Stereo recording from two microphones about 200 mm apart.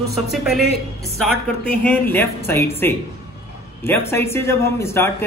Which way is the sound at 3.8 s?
10° left (ahead or behind).